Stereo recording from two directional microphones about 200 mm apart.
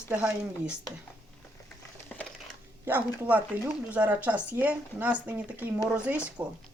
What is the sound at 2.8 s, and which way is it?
Speech, 10° right (ahead or behind).